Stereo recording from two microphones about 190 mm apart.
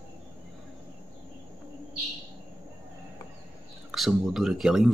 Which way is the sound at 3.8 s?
Centre (ahead or behind).